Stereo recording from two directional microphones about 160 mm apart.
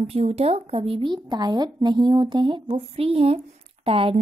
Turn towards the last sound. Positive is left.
turn(degrees=-35)  # may be behind; listen again after turning